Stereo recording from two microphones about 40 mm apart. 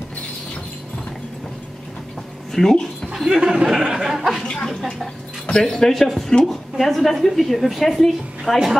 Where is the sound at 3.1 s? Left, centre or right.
Centre.